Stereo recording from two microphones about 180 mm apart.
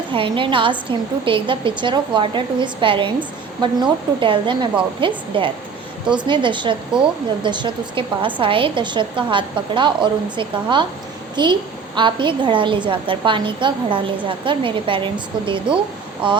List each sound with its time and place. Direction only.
0.1 s a woman's voice: 30° right (ahead or behind)
11.9 s a woman's voice: 25° right (ahead or behind)